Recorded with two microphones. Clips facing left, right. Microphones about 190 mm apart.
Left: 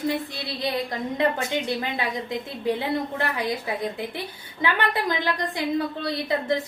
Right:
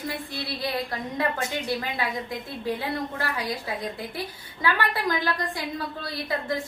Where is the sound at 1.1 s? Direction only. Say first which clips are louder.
Left 4 dB; 20° left (ahead or behind).